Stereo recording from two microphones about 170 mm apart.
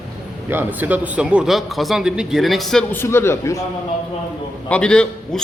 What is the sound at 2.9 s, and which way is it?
Speech, 15° left (ahead or behind).